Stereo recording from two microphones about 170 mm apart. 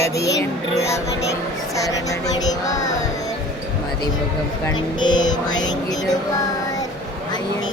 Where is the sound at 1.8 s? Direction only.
20° left (ahead or behind).